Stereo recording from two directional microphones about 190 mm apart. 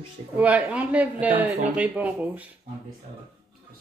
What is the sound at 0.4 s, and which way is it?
A man's voice, 5° right (ahead or behind).